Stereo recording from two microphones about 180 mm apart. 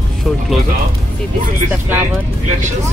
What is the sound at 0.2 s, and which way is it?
Speech, centre (ahead or behind).